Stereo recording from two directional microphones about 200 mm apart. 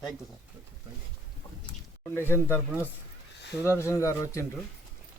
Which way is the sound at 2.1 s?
10° left (ahead or behind).